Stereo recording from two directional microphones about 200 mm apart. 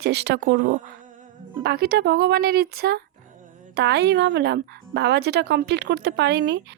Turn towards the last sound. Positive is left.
turn(degrees=-60)  # may be behind; listen again after turning